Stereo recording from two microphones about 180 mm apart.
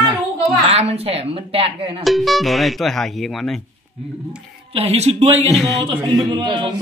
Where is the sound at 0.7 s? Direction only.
35° right (ahead or behind).